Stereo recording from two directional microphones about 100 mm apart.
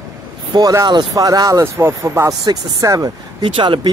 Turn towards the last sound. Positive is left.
turn(degrees=-55)  # may be behind; listen again after turning